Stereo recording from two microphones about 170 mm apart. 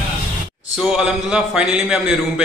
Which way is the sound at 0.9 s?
5° right (ahead or behind).